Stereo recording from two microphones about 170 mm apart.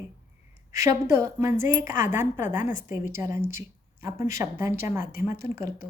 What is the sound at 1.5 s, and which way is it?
A woman's voice, 50° left (ahead or behind).